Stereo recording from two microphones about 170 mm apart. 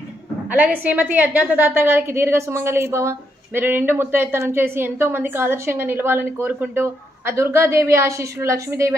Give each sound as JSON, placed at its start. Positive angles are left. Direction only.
{"t": 0.5, "sound": "a woman's voice", "side_deg": -10}